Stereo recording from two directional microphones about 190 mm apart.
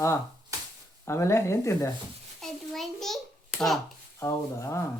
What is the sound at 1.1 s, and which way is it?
Speech, 15° left (ahead or behind).